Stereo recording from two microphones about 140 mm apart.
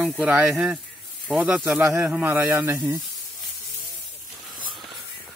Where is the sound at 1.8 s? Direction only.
15° right (ahead or behind).